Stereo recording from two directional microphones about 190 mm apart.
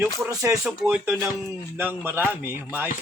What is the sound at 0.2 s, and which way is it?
Speech, 15° right (ahead or behind).